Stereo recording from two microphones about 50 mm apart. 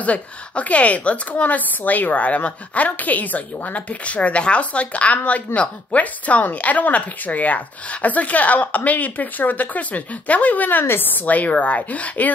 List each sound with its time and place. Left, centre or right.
0.0 s a woman's voice: left